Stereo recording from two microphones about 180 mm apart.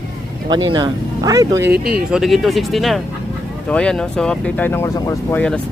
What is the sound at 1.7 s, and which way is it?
Speech, 55° right (ahead or behind).